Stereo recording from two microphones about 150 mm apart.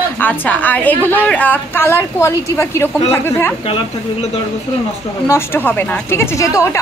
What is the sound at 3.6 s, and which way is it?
Speech, 40° left (ahead or behind).